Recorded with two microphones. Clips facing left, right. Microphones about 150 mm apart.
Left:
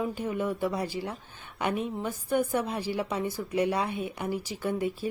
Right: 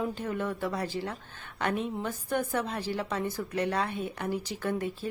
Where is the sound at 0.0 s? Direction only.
10° left (ahead or behind).